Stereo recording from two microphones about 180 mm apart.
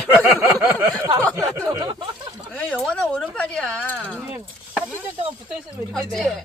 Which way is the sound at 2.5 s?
5° left (ahead or behind).